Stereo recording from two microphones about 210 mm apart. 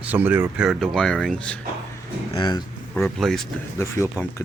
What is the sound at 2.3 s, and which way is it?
Speech, 20° left (ahead or behind).